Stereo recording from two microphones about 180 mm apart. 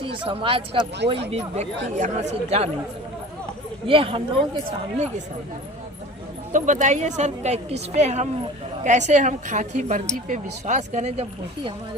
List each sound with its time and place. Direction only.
0.0 s a woman's voice: 30° right (ahead or behind)
3.8 s speech: 30° right (ahead or behind)
6.5 s a woman's voice: 45° right (ahead or behind)